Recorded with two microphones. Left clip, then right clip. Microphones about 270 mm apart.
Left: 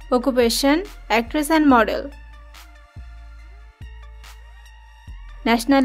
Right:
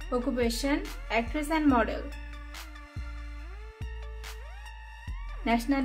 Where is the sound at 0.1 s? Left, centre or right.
Left.